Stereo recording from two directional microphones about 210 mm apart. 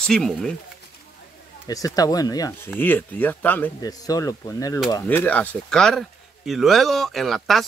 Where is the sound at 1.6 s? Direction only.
15° left (ahead or behind).